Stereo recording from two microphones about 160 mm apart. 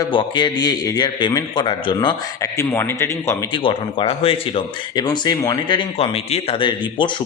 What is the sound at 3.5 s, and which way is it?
Speech, 35° left (ahead or behind).